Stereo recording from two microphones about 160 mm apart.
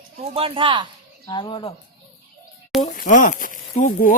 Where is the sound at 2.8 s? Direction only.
55° left (ahead or behind).